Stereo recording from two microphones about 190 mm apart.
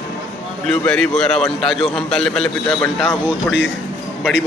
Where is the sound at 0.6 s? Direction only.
5° left (ahead or behind).